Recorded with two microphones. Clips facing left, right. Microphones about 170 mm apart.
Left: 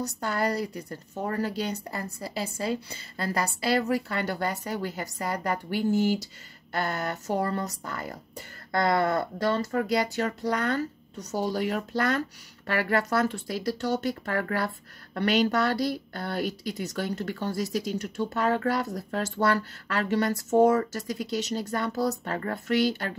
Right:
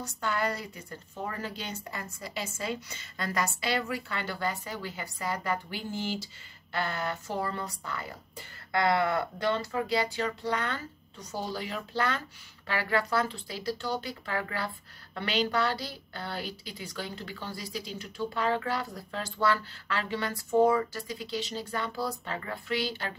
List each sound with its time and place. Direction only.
0.0 s a woman's voice: 40° left (ahead or behind)